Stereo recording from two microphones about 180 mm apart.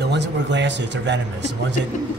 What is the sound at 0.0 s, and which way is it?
Speech, 75° right (ahead or behind).